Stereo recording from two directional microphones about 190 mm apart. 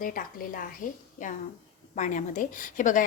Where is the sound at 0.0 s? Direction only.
45° left (ahead or behind).